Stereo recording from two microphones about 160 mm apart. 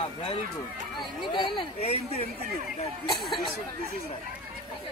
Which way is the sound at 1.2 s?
30° left (ahead or behind).